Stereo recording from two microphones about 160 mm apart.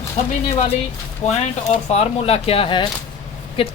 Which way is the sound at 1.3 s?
45° left (ahead or behind).